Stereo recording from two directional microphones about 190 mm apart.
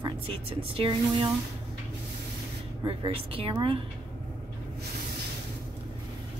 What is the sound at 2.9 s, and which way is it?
Speech, 25° right (ahead or behind).